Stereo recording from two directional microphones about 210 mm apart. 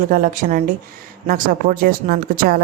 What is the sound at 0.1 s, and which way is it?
A woman's voice, 40° right (ahead or behind).